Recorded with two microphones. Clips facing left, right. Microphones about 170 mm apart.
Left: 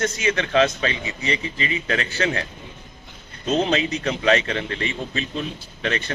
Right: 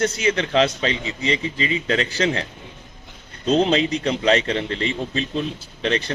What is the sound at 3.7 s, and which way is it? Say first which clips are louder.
A man's voice: right 3 dB; 30° right (ahead or behind).